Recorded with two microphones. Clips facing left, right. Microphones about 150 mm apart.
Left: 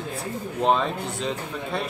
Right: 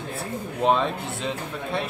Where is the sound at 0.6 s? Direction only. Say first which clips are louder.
Even; centre (ahead or behind).